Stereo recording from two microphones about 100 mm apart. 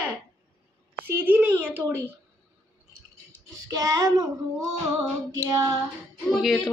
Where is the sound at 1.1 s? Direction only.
20° right (ahead or behind).